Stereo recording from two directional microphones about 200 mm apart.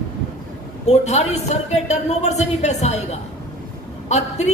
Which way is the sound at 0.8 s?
35° left (ahead or behind).